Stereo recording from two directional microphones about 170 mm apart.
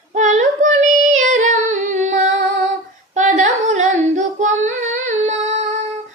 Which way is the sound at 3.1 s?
45° right (ahead or behind).